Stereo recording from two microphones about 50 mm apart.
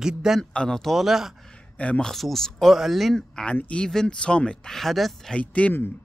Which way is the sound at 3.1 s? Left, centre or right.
Centre.